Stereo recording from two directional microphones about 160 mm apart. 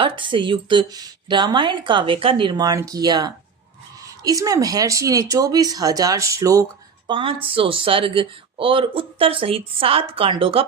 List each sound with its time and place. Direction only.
0.0 s speech: 30° right (ahead or behind)
7.1 s speech: 35° right (ahead or behind)